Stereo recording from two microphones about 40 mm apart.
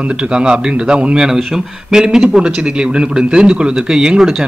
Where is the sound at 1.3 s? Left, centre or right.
Centre.